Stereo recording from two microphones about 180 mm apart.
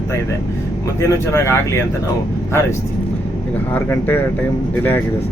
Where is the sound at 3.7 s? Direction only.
10° left (ahead or behind).